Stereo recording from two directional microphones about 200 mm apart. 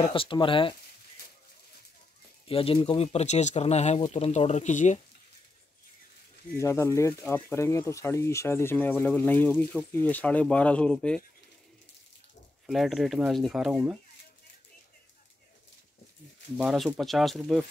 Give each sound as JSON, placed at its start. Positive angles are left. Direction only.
{"t": 0.1, "sound": "speech", "side_deg": 25}
{"t": 2.4, "sound": "speech", "side_deg": 30}
{"t": 6.6, "sound": "speech", "side_deg": 15}
{"t": 12.6, "sound": "speech", "side_deg": 0}
{"t": 16.5, "sound": "speech", "side_deg": 0}